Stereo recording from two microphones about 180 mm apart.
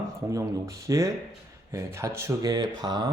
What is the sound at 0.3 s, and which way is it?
Speech, 15° right (ahead or behind).